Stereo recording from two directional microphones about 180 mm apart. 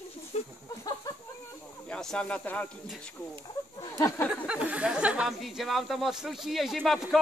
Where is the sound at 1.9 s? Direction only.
5° left (ahead or behind).